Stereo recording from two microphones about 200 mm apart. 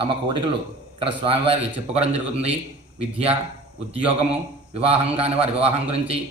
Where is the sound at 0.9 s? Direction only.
25° right (ahead or behind).